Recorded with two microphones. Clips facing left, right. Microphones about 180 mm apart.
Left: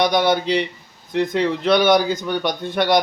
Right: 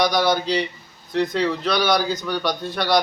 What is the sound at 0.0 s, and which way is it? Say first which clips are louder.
A man's voice: left 2 dB; 25° left (ahead or behind).